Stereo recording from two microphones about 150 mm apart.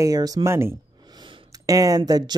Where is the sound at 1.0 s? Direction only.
30° right (ahead or behind).